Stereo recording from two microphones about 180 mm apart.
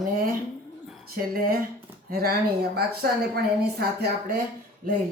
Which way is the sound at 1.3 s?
55° right (ahead or behind).